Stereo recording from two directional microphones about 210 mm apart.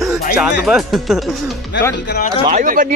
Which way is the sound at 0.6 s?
Centre (ahead or behind).